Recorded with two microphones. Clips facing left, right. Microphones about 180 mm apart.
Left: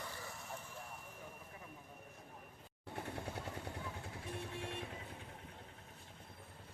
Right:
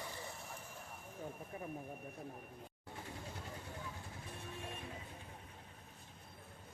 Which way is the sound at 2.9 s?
60° left (ahead or behind).